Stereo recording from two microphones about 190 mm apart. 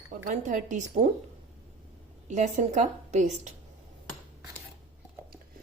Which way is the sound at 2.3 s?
40° right (ahead or behind).